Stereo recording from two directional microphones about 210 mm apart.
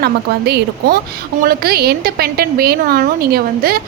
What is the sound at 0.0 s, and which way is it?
A woman's voice, 50° right (ahead or behind).